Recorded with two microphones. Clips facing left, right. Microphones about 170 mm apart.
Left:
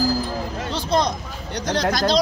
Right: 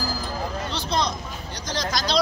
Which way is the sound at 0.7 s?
50° left (ahead or behind).